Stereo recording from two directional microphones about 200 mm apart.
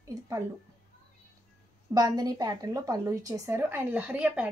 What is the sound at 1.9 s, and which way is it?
Speech, 20° right (ahead or behind).